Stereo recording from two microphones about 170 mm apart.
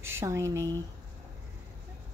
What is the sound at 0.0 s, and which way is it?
Speech, 15° right (ahead or behind).